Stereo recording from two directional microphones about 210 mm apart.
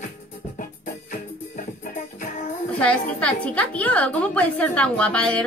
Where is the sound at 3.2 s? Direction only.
5° left (ahead or behind).